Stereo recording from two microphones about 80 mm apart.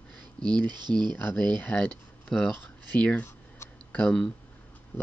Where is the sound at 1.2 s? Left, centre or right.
Centre.